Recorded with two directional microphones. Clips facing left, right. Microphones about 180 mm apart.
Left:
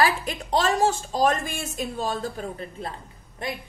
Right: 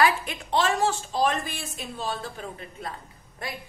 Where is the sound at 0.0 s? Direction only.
35° left (ahead or behind).